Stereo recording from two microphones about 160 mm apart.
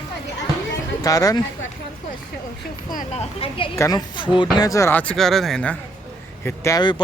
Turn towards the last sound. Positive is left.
turn(degrees=20)  # may be behind; listen again after turning